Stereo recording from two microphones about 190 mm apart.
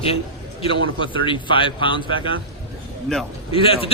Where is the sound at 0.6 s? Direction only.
25° left (ahead or behind).